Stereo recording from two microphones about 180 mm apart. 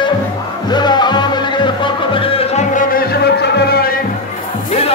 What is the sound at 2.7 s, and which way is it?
Music, 50° left (ahead or behind).